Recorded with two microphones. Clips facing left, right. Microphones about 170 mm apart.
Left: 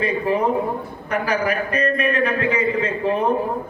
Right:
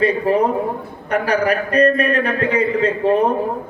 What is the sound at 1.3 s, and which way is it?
A man's voice, 35° right (ahead or behind).